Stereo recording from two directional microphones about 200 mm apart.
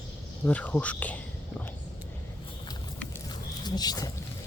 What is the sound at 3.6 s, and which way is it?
Speech, 20° left (ahead or behind).